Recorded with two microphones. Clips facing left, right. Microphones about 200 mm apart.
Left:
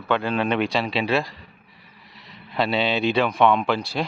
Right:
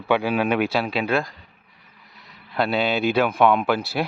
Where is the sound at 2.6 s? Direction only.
Centre (ahead or behind).